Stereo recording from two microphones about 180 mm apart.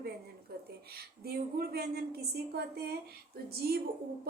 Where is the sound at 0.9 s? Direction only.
60° right (ahead or behind).